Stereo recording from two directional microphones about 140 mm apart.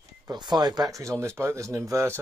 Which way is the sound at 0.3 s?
30° right (ahead or behind).